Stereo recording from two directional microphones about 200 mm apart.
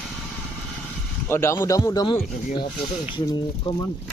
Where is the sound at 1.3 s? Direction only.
15° left (ahead or behind).